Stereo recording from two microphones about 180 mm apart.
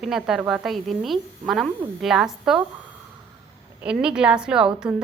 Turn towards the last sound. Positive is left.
turn(degrees=-5)  # may be behind; listen again after turning